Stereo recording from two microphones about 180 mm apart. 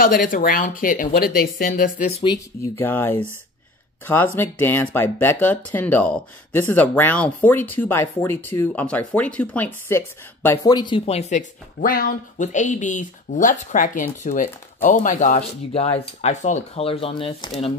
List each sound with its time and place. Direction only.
0.0 s speech: 50° left (ahead or behind)
2.8 s speech: 10° left (ahead or behind); by 17.5 s 30° left (ahead or behind)